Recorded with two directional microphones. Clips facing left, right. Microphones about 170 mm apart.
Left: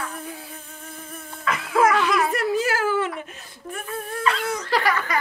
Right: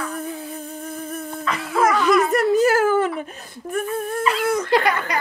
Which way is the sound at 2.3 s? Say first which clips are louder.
Right 7 dB; 45° right (ahead or behind).